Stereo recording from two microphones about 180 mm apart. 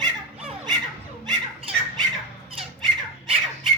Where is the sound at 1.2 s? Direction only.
30° right (ahead or behind).